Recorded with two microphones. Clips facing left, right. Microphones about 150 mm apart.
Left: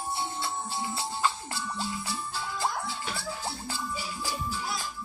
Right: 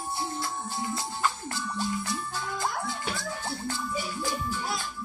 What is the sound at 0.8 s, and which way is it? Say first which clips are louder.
Music: even; 30° left (ahead or behind).